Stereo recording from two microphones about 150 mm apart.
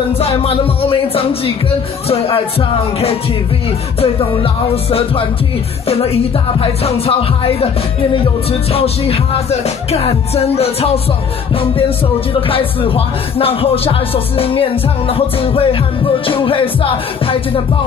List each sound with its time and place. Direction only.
0.2 s music: 40° left (ahead or behind)
4.0 s music: 40° left (ahead or behind)
5.9 s music: 40° left (ahead or behind)
12.4 s music: 35° left (ahead or behind)